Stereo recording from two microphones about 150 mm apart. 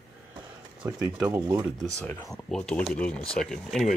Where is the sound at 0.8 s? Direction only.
20° right (ahead or behind).